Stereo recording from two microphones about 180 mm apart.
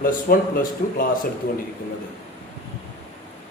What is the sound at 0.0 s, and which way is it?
A man's voice, 50° left (ahead or behind).